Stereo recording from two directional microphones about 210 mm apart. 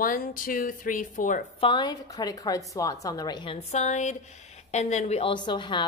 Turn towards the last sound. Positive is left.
turn(degrees=20)  # may be behind; listen again after turning